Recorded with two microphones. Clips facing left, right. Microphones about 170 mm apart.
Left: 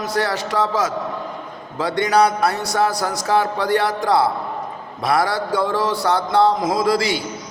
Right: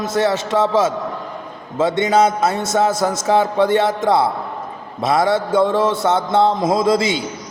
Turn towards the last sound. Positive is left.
turn(degrees=-20)  # may be behind; listen again after turning